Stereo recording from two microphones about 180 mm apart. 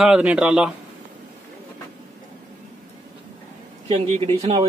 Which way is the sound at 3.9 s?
35° right (ahead or behind).